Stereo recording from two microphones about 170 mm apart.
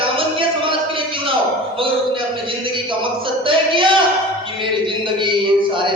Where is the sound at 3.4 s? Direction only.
30° right (ahead or behind).